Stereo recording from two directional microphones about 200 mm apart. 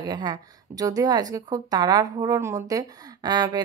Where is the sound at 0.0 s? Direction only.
20° right (ahead or behind).